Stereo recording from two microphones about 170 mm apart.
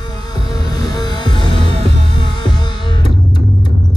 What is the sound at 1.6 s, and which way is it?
Music, 35° right (ahead or behind).